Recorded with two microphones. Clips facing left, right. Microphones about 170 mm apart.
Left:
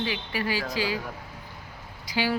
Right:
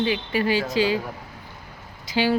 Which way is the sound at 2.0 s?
25° right (ahead or behind).